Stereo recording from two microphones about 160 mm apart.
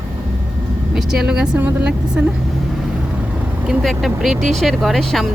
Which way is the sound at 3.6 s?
Centre (ahead or behind).